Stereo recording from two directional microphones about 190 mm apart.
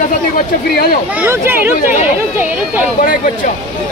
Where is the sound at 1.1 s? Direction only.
10° right (ahead or behind).